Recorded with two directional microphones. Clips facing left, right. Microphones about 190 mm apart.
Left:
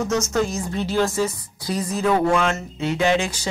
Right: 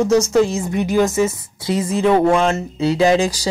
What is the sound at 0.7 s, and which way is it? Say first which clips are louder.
Speech: right 5 dB; 15° right (ahead or behind).